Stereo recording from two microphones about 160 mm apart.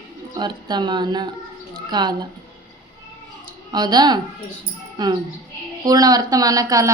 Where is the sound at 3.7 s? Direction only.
25° right (ahead or behind).